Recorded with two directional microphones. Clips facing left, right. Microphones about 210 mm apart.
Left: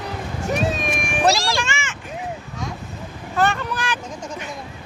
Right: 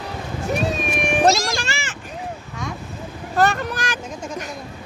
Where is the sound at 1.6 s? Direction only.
35° right (ahead or behind).